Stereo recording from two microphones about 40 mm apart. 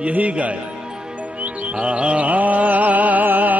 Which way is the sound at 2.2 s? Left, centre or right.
Right.